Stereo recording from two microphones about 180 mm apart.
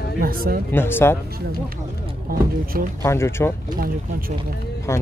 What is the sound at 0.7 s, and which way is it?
Speech, 10° left (ahead or behind).